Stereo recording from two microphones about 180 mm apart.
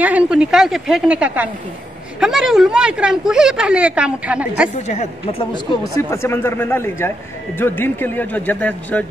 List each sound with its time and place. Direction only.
0.0 s a woman's voice: 5° right (ahead or behind)
4.8 s a woman's voice: 40° left (ahead or behind)
5.9 s a man's voice: 15° left (ahead or behind)